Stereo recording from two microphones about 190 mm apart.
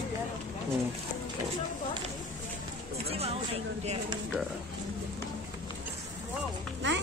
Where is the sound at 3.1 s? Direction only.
30° right (ahead or behind).